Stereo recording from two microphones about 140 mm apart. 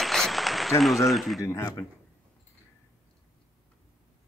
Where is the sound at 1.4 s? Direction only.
20° left (ahead or behind).